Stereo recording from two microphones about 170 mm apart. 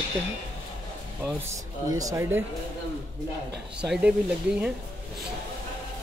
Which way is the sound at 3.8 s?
5° right (ahead or behind).